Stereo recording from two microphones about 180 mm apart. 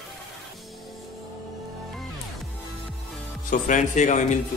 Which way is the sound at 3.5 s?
45° left (ahead or behind).